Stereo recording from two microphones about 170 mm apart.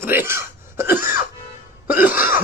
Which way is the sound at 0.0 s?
15° right (ahead or behind).